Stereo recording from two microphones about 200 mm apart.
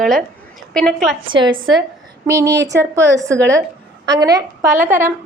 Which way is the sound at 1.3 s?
25° right (ahead or behind).